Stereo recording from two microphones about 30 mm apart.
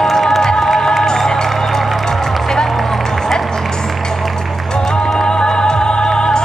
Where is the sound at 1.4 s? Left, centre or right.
Centre.